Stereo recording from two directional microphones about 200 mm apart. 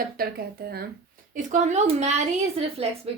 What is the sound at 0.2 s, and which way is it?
Speech, 50° right (ahead or behind).